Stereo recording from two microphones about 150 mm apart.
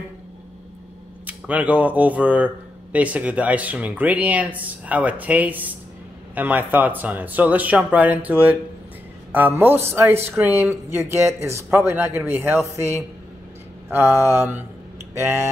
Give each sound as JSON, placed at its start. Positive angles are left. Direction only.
{"t": 1.2, "sound": "speech", "side_deg": -10}